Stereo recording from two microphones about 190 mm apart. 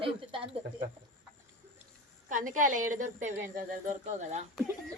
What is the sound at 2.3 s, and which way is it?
A woman's voice, 45° right (ahead or behind).